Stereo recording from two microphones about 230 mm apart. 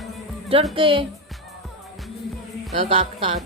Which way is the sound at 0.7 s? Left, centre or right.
Right.